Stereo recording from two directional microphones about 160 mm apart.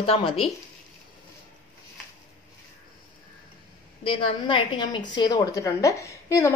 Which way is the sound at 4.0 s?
35° left (ahead or behind).